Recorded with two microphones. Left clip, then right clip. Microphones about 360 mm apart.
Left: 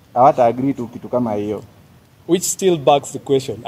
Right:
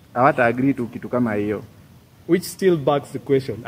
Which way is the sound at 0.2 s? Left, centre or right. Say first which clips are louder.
Left 4 dB; centre.